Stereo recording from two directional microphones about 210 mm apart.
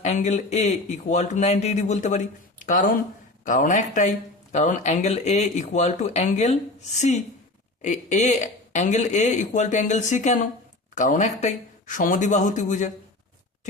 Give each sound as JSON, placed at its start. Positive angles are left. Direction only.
{"t": 0.0, "sound": "speech", "side_deg": 35}
{"t": 7.8, "sound": "speech", "side_deg": 35}